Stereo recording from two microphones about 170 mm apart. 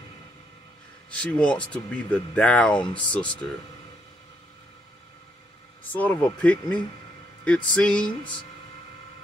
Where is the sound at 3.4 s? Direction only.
10° left (ahead or behind).